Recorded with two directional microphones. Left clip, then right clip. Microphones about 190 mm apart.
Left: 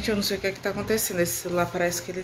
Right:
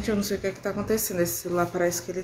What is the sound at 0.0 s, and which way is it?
Speech, 5° right (ahead or behind).